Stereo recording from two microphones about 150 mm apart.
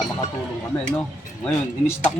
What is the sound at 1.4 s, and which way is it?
Speech, 15° left (ahead or behind).